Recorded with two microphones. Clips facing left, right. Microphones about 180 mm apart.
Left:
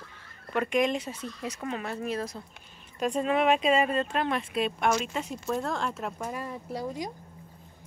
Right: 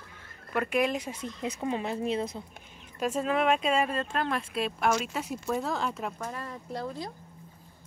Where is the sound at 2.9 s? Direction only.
5° right (ahead or behind); by 7.1 s 15° left (ahead or behind).